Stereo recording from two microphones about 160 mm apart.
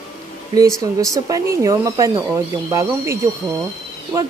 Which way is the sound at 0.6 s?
20° right (ahead or behind).